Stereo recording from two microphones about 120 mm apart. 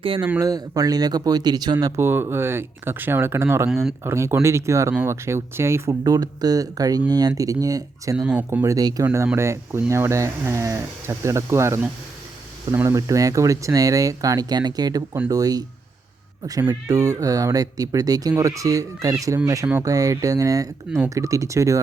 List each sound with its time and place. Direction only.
0.3 s speech: 30° right (ahead or behind)
2.0 s speech: 20° right (ahead or behind)
6.0 s speech: 30° right (ahead or behind)
9.0 s speech: 20° right (ahead or behind)